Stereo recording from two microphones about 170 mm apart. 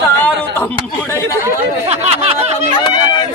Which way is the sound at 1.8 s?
40° right (ahead or behind).